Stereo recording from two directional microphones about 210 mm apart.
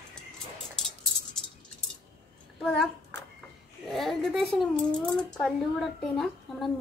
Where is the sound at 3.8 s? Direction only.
Centre (ahead or behind).